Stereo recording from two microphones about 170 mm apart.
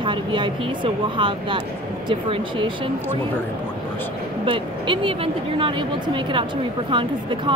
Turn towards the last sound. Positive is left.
turn(degrees=-30)  # may be behind; listen again after turning